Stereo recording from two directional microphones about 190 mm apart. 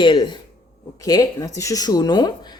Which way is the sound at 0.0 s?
25° left (ahead or behind).